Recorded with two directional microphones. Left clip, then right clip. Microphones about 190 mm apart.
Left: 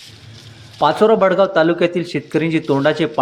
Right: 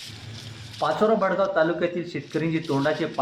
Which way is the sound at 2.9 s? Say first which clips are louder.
Left 9 dB; 25° left (ahead or behind).